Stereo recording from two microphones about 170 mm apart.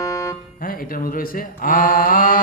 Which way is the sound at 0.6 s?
55° left (ahead or behind).